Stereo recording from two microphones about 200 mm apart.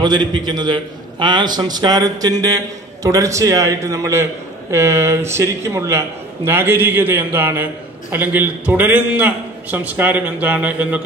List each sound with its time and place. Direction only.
0.0 s a man's voice: 20° right (ahead or behind)